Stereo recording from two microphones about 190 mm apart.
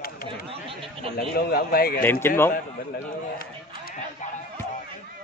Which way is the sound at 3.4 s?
50° left (ahead or behind).